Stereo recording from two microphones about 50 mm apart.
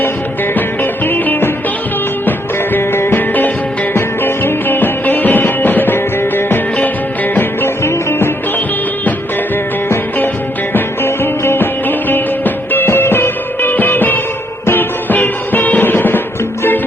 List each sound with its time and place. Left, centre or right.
0.5 s music: left
2.7 s music: left
10.8 s music: left